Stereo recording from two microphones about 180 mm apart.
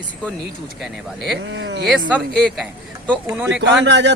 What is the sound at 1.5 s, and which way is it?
Speech, 75° right (ahead or behind).